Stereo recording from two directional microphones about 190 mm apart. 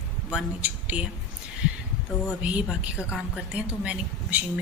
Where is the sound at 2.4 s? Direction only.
5° right (ahead or behind).